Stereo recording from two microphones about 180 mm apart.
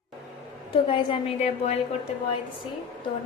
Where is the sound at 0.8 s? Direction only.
30° left (ahead or behind).